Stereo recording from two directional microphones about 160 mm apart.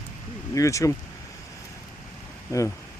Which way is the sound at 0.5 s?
20° left (ahead or behind).